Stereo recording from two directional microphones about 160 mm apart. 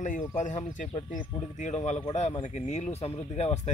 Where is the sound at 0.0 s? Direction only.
50° left (ahead or behind).